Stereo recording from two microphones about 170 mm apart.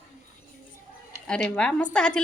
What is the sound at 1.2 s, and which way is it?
Speech, 5° left (ahead or behind).